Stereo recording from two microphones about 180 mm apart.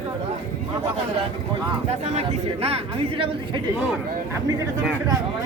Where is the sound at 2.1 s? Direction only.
35° right (ahead or behind).